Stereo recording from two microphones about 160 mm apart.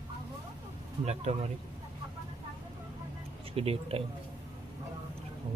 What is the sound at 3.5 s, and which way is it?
Speech, 40° right (ahead or behind).